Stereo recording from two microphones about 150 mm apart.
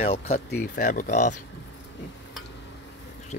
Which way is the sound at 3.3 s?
50° left (ahead or behind).